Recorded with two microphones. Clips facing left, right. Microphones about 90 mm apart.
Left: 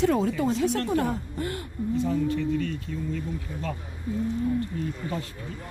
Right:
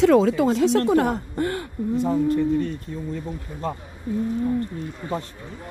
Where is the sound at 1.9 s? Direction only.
40° right (ahead or behind).